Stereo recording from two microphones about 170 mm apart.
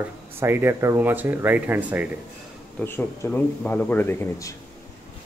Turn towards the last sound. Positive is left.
turn(degrees=15)  # may be behind; listen again after turning